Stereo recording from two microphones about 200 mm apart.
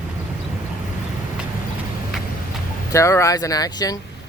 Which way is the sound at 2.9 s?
15° left (ahead or behind).